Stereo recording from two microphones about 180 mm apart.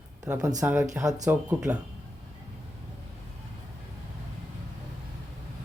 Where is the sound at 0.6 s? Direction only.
10° right (ahead or behind).